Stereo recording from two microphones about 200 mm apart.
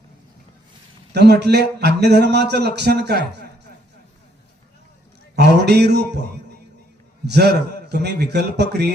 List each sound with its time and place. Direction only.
1.1 s a man's voice: 55° right (ahead or behind)
5.4 s a man's voice: 55° right (ahead or behind)
7.3 s a man's voice: 55° right (ahead or behind)